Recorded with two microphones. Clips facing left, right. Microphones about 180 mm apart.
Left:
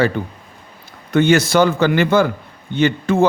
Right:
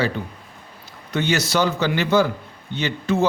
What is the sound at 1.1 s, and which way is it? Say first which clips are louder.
A man's voice: left 8 dB; 50° left (ahead or behind).